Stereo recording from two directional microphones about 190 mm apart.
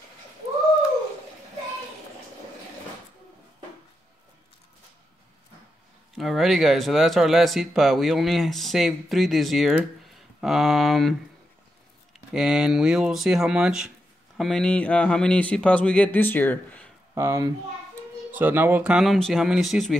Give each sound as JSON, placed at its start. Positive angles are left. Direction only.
{"t": 6.1, "sound": "speech", "side_deg": 0}
{"t": 17.1, "sound": "speech", "side_deg": -15}